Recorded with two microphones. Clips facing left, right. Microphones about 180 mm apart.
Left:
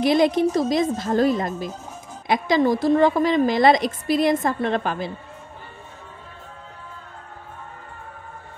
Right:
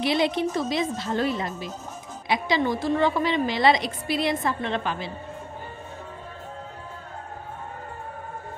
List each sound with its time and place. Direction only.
0.0 s a woman's voice: 45° left (ahead or behind)